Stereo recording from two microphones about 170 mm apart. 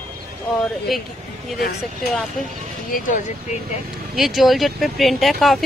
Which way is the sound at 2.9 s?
50° left (ahead or behind).